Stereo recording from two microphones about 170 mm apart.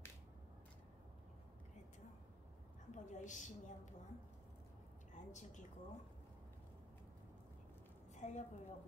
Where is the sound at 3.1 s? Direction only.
45° left (ahead or behind).